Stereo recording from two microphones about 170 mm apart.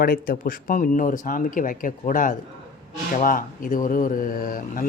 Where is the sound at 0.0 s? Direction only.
55° left (ahead or behind).